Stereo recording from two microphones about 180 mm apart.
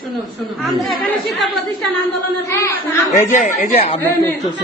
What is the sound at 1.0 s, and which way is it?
Speech, centre (ahead or behind).